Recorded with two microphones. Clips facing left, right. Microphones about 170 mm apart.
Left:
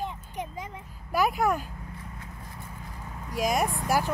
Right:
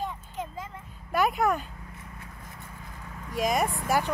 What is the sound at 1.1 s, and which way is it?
Speech, centre (ahead or behind).